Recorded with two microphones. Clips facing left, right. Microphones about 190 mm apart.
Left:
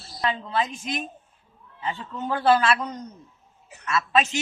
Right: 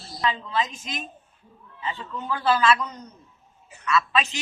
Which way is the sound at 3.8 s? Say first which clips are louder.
Left 1 dB; 45° left (ahead or behind).